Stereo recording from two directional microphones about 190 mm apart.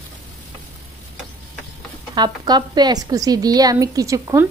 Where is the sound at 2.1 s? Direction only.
20° right (ahead or behind).